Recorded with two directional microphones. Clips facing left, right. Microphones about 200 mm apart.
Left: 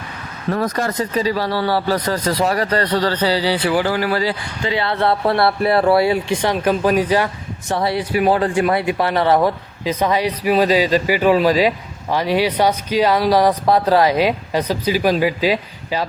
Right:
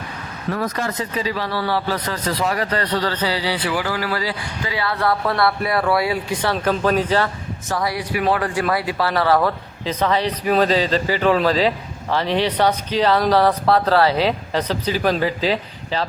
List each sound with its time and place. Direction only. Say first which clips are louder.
0.5 s speech: left 4 dB; 40° left (ahead or behind)
6.5 s a man's voice: left 2 dB; 15° left (ahead or behind)
7.7 s a man's voice: left 4 dB; 25° left (ahead or behind); by 16.0 s 10° left (ahead or behind)